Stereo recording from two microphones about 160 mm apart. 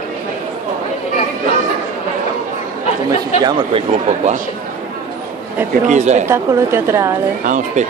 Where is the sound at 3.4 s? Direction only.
25° right (ahead or behind).